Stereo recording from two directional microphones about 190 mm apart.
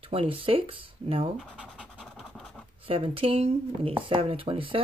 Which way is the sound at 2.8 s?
30° right (ahead or behind).